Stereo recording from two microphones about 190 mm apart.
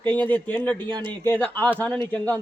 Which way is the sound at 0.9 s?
20° right (ahead or behind).